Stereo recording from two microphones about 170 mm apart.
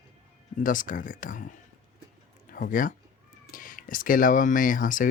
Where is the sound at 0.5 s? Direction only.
50° left (ahead or behind).